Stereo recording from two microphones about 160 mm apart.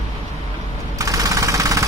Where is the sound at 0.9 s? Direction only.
20° right (ahead or behind).